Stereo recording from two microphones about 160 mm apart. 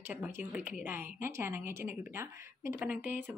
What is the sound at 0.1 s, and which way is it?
Speech, 10° right (ahead or behind).